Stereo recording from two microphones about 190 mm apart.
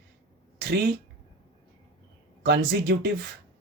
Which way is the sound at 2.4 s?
55° right (ahead or behind).